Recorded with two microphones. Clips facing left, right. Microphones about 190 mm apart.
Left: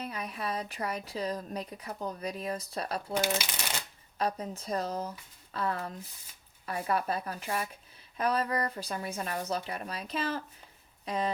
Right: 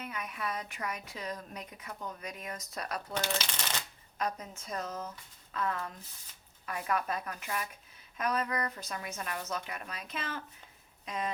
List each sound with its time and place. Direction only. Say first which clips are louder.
0.0 s a woman's voice: left 3 dB; 35° left (ahead or behind)
3.2 s speech: left 4 dB; 10° left (ahead or behind)
4.2 s a woman's voice: left 4 dB; 30° left (ahead or behind)